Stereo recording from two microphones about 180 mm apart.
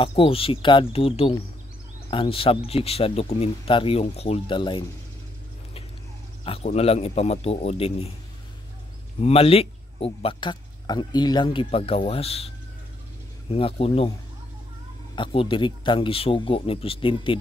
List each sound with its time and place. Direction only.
0.0 s speech: 30° left (ahead or behind)
6.4 s speech: 35° left (ahead or behind)
9.2 s speech: 35° left (ahead or behind)
15.1 s speech: 30° left (ahead or behind)